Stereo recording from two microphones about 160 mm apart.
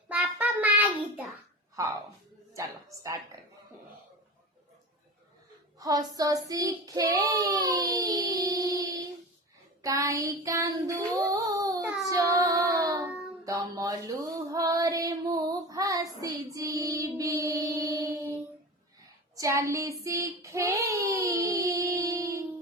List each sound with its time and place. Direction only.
0.1 s child singing: 10° right (ahead or behind)
2.6 s child singing: 20° right (ahead or behind)
5.8 s child singing: 25° right (ahead or behind)
19.4 s child singing: 20° right (ahead or behind)